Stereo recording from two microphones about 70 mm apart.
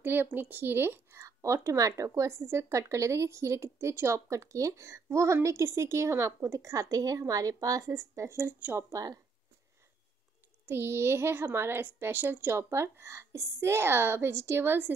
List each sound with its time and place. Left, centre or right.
0.0 s a woman's voice: right
1.1 s a woman's voice: right
2.0 s a woman's voice: right
10.7 s a woman's voice: right